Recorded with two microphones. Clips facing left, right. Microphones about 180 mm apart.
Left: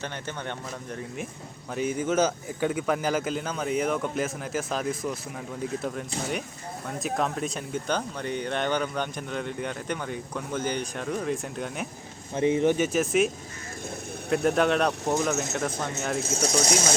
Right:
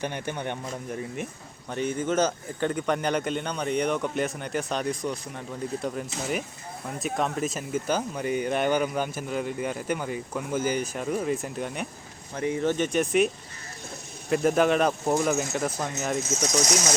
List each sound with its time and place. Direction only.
0.0 s a man's voice: 15° right (ahead or behind)
1.7 s speech: 5° left (ahead or behind)
7.0 s speech: centre (ahead or behind)
12.3 s speech: 20° left (ahead or behind)
12.7 s speech: 5° left (ahead or behind)
16.3 s speech: 30° left (ahead or behind)